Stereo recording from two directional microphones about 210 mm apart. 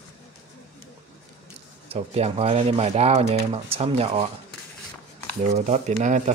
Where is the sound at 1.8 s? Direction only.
30° right (ahead or behind).